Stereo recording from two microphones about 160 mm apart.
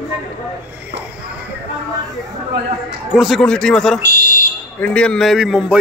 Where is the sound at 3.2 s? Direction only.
Centre (ahead or behind).